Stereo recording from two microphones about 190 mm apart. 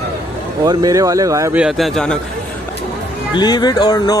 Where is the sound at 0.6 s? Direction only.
20° right (ahead or behind).